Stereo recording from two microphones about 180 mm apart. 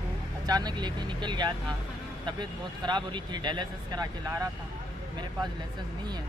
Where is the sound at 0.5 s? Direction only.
20° right (ahead or behind).